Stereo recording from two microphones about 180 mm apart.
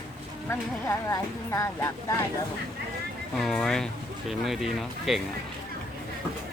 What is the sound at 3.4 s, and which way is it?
Speech, 5° left (ahead or behind).